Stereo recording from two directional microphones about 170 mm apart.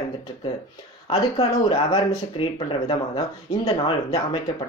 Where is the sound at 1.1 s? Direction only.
35° left (ahead or behind).